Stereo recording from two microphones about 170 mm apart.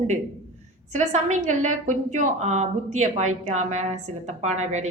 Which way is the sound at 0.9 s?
45° right (ahead or behind).